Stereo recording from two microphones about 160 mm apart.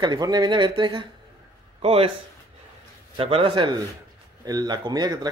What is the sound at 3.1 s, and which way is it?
A man's voice, 35° right (ahead or behind).